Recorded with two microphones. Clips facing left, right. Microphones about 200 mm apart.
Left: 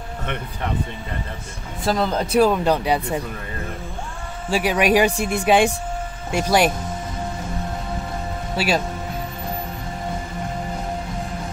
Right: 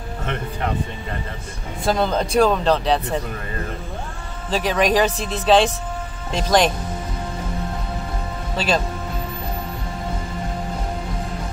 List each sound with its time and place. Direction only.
1.9 s speech: 5° left (ahead or behind)
4.5 s speech: 10° left (ahead or behind)
8.5 s speech: 10° left (ahead or behind)